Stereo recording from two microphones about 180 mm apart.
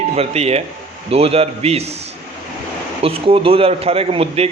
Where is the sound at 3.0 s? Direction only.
30° right (ahead or behind).